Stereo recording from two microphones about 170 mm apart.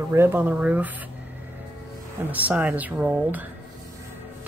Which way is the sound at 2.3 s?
10° right (ahead or behind).